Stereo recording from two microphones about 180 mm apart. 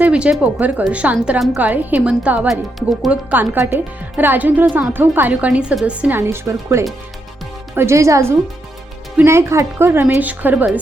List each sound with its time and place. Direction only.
0.0 s a woman's voice: 5° right (ahead or behind)